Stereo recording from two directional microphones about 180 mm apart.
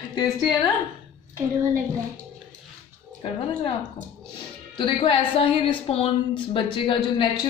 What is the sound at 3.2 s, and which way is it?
Speech, 30° left (ahead or behind).